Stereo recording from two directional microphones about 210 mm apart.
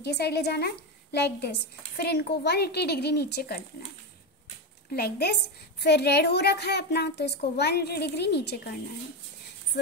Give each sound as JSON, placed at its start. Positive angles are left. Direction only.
{"t": 0.0, "sound": "a woman's voice", "side_deg": 50}
{"t": 4.9, "sound": "a woman's voice", "side_deg": 50}